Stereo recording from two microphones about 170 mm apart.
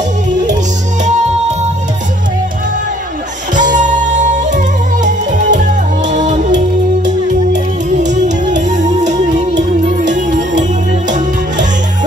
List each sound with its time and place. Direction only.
3.7 s music: 45° right (ahead or behind)
7.9 s music: 45° right (ahead or behind)